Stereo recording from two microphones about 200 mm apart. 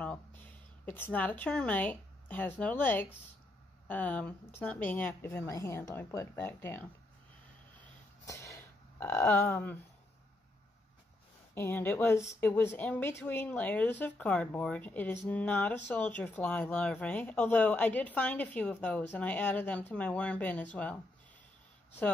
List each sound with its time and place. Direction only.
0.0 s a woman's voice: 5° left (ahead or behind)
8.3 s a sound: 15° left (ahead or behind)
9.0 s speech: 10° left (ahead or behind)
11.5 s speech: 10° left (ahead or behind)